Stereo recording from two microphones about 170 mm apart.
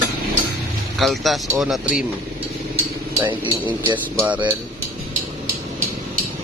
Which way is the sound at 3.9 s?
10° right (ahead or behind).